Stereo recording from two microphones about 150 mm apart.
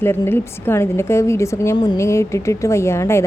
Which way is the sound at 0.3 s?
15° left (ahead or behind).